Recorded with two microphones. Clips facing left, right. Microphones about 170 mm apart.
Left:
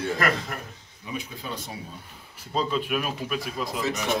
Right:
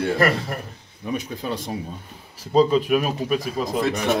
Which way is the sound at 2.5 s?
35° right (ahead or behind).